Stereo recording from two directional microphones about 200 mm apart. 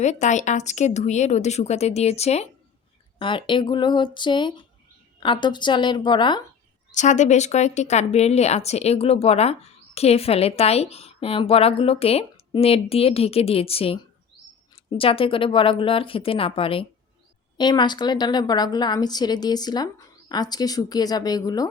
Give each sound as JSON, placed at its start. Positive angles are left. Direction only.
{"t": 0.0, "sound": "a woman's voice", "side_deg": 35}
{"t": 6.9, "sound": "a woman's voice", "side_deg": 35}